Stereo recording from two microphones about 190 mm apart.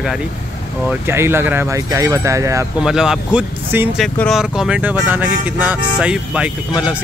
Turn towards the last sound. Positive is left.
turn(degrees=-5)  # may be behind; listen again after turning